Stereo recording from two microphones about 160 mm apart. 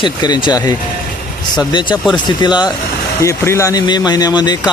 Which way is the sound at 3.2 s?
15° left (ahead or behind).